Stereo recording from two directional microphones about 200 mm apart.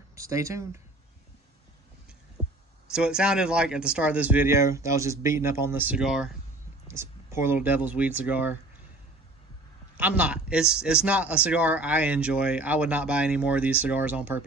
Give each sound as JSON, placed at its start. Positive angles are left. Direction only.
{"t": 0.1, "sound": "speech", "side_deg": -15}
{"t": 2.9, "sound": "speech", "side_deg": -5}
{"t": 6.9, "sound": "speech", "side_deg": -15}
{"t": 9.9, "sound": "speech", "side_deg": -5}